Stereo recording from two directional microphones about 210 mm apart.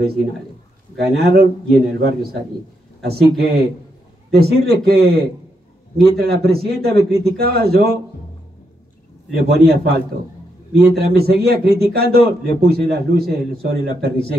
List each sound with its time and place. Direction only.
0.9 s a man's voice: 50° right (ahead or behind)
9.3 s a man's voice: 50° right (ahead or behind)